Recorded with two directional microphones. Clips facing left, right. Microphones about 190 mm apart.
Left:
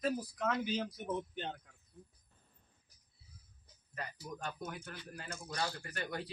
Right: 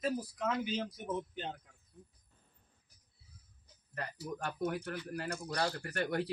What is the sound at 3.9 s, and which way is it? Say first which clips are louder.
Speech: right 4 dB; 60° right (ahead or behind).